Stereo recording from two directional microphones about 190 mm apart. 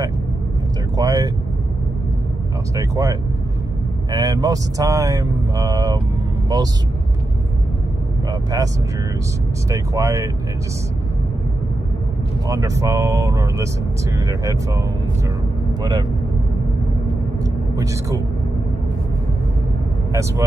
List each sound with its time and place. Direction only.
0.9 s vehicle: 20° right (ahead or behind)
2.7 s speech: 15° right (ahead or behind)
8.3 s speech: 20° right (ahead or behind)
9.7 s speech: 15° right (ahead or behind)
12.4 s speech: 15° right (ahead or behind)
15.8 s speech: 20° right (ahead or behind)
17.7 s speech: 15° right (ahead or behind)
20.1 s speech: 15° right (ahead or behind)